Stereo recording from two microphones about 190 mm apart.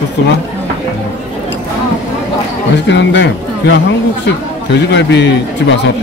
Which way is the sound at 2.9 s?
65° left (ahead or behind).